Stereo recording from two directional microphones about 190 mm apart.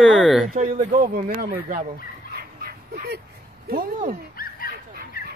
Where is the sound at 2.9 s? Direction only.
55° right (ahead or behind).